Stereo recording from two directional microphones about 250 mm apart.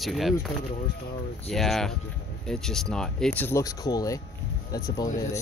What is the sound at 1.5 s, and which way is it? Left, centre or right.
Speech, centre.